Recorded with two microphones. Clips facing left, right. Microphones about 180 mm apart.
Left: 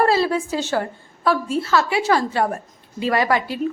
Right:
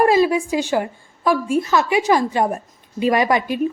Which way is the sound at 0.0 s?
15° right (ahead or behind).